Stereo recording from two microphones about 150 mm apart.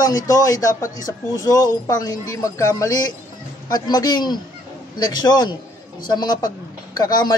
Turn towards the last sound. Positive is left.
turn(degrees=25)  # may be behind; listen again after turning